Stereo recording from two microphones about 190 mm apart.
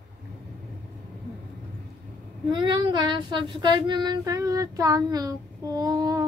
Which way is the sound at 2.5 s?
25° right (ahead or behind).